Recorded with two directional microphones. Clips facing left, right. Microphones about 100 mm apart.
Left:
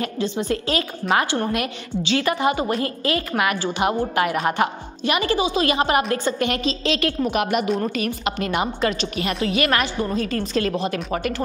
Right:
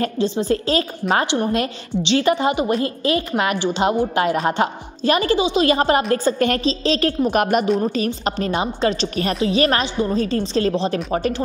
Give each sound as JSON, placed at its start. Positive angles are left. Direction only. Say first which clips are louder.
{"t": 0.0, "sound": "a woman's voice", "louder": "right 4 dB", "side_deg": -35}
{"t": 1.2, "sound": "a woman's voice", "louder": "right 3 dB", "side_deg": -20}